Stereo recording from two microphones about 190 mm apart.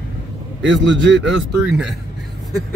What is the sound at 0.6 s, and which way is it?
Speech, 70° right (ahead or behind).